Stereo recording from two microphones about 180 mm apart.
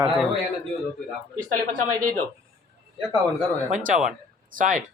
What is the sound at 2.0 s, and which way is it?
Speech, 50° right (ahead or behind).